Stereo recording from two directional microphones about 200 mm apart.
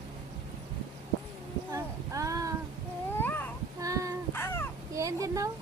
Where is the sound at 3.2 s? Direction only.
10° left (ahead or behind).